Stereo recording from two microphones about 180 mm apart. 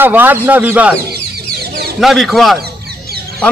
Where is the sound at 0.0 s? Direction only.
10° right (ahead or behind).